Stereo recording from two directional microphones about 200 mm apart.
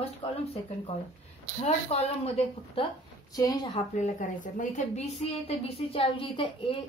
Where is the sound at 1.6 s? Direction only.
30° left (ahead or behind).